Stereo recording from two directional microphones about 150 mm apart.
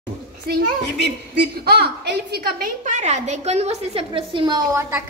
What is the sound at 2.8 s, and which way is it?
A woman's voice, 50° right (ahead or behind).